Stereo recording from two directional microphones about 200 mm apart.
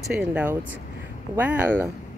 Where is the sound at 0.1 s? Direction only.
5° right (ahead or behind).